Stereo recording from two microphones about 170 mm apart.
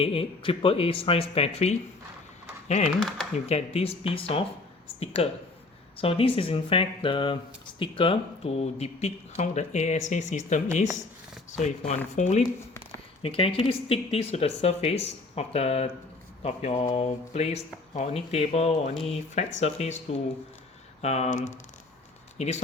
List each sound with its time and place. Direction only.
0.0 s speech: 35° left (ahead or behind)
13.2 s speech: 30° left (ahead or behind)